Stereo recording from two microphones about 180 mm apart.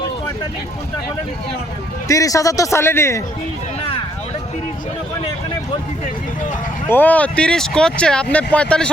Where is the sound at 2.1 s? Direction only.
20° left (ahead or behind).